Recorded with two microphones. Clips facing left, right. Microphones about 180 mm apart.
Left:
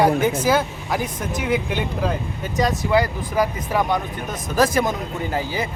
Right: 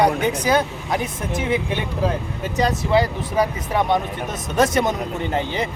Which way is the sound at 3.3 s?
20° right (ahead or behind).